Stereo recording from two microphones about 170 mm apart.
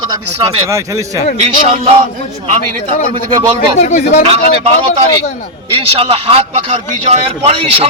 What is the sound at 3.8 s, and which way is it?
Speech, 45° left (ahead or behind).